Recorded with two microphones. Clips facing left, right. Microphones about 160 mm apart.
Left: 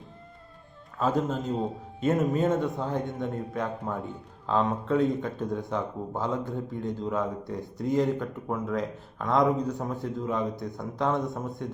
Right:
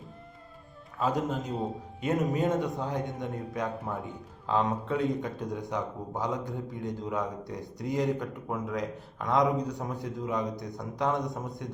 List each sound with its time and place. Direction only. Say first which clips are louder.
0.9 s a man's voice: left 2 dB; 15° right (ahead or behind)